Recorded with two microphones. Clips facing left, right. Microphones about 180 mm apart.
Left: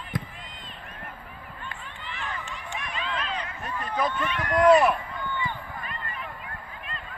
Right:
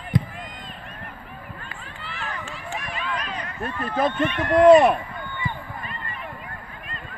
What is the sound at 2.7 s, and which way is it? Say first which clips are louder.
Run: right 2 dB; 45° right (ahead or behind).